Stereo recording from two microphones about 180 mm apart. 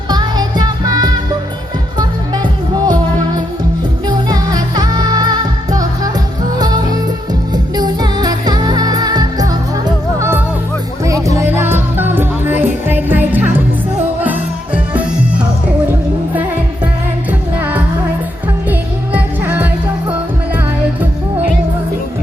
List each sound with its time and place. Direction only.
0.1 s music: 25° right (ahead or behind)
15.9 s music: 10° right (ahead or behind)